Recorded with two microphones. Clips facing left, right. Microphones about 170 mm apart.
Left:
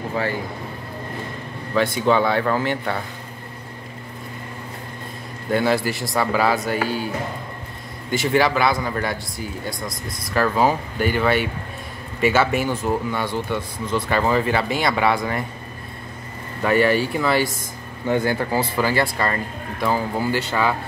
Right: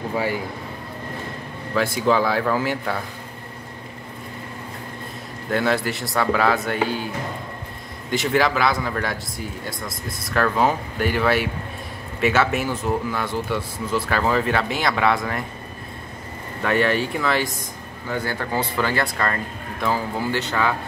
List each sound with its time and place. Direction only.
0.1 s speech: 10° right (ahead or behind)
1.7 s speech: centre (ahead or behind)
5.5 s speech: centre (ahead or behind)
8.1 s speech: centre (ahead or behind)
16.6 s speech: 5° left (ahead or behind)
18.0 s speech: 20° left (ahead or behind)